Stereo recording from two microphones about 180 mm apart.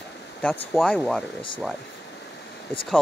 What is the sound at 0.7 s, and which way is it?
Speech, centre (ahead or behind).